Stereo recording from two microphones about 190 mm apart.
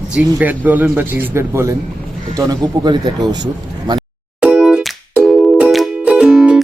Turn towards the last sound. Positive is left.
turn(degrees=-5)  # may be behind; listen again after turning